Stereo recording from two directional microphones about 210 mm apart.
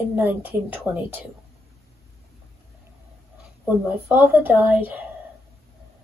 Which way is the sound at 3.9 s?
10° right (ahead or behind).